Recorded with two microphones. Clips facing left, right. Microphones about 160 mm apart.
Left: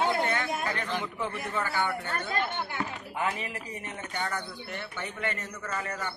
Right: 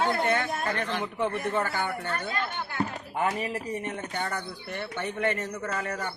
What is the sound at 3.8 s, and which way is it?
A man's voice, 50° right (ahead or behind).